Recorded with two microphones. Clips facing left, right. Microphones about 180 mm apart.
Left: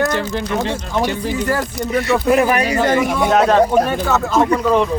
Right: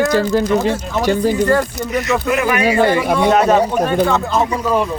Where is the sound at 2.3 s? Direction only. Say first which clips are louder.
Left 1 dB; 35° left (ahead or behind).